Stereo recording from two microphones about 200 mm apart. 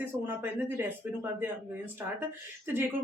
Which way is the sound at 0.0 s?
10° right (ahead or behind).